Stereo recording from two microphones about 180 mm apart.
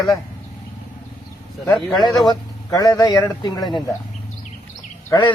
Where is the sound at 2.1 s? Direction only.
20° left (ahead or behind).